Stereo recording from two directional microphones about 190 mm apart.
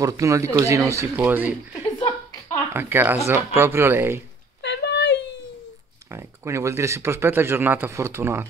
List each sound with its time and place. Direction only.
0.0 s speech: 15° right (ahead or behind)
2.7 s speech: 10° right (ahead or behind)
4.6 s a sound: 65° left (ahead or behind)
6.1 s speech: 15° right (ahead or behind)